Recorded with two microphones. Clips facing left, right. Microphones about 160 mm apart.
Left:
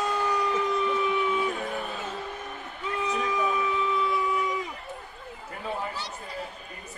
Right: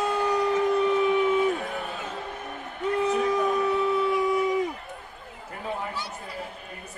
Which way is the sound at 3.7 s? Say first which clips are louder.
Right 4 dB; 60° right (ahead or behind).